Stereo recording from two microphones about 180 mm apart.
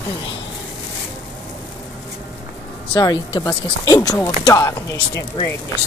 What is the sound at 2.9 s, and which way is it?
Speech, 25° left (ahead or behind).